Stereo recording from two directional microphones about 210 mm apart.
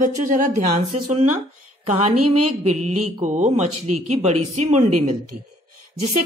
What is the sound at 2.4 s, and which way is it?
A woman's voice, 35° right (ahead or behind).